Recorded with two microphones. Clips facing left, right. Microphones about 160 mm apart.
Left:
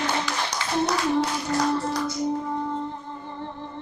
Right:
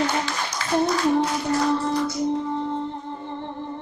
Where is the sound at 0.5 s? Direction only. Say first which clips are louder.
Right 4 dB; 75° left (ahead or behind).